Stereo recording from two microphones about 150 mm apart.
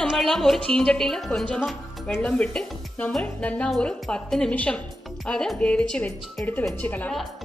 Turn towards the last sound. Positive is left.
turn(degrees=10)  # may be behind; listen again after turning